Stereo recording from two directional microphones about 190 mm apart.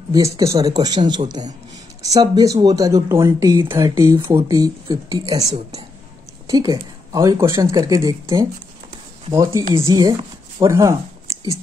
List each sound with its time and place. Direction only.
0.1 s speech: 15° right (ahead or behind)
6.5 s speech: 20° right (ahead or behind)